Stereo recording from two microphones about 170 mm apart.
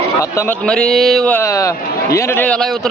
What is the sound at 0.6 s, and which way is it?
Speech, 5° left (ahead or behind).